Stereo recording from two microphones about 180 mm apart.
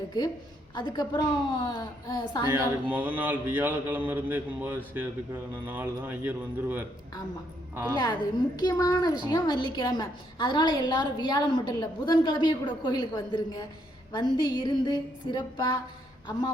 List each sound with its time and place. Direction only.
0.7 s a woman's voice: 25° left (ahead or behind)
2.5 s mantra: 10° right (ahead or behind)
7.9 s a woman's voice: 20° left (ahead or behind)